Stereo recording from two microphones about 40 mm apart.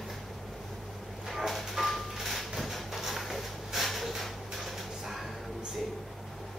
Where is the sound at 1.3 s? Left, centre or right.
Centre.